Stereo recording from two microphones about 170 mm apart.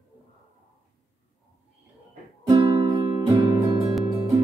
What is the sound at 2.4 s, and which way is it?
Music, 25° right (ahead or behind).